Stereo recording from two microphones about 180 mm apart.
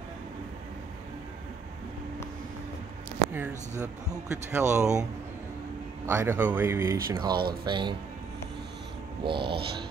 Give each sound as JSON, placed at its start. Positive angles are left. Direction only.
{"t": 3.8, "sound": "speech", "side_deg": -15}
{"t": 6.0, "sound": "speech", "side_deg": -15}
{"t": 7.1, "sound": "speech", "side_deg": -25}
{"t": 9.2, "sound": "speech", "side_deg": -30}